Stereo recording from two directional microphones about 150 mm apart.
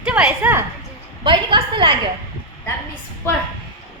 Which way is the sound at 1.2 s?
35° right (ahead or behind).